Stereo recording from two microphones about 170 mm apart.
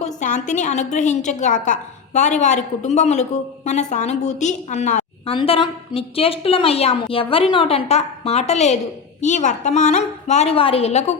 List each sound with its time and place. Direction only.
0.0 s a woman's voice: 45° left (ahead or behind)